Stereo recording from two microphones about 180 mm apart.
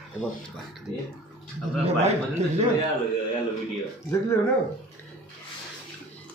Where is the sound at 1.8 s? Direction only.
35° right (ahead or behind).